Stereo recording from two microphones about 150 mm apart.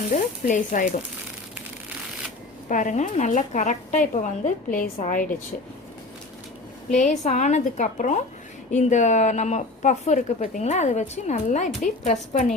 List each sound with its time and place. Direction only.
0.1 s a woman's voice: 55° left (ahead or behind)
2.6 s a woman's voice: 55° left (ahead or behind)
6.9 s a woman's voice: 55° left (ahead or behind)